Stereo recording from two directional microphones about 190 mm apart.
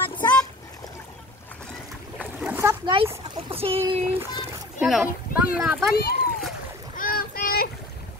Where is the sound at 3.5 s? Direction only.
30° right (ahead or behind).